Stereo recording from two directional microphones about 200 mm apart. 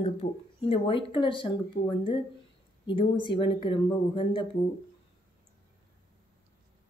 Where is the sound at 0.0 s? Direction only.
30° left (ahead or behind).